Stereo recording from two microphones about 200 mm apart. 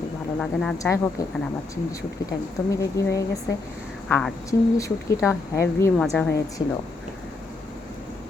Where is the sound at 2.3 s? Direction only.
15° left (ahead or behind).